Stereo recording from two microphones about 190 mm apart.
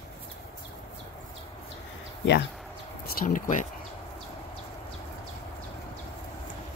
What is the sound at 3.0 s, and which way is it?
Speech, 45° left (ahead or behind).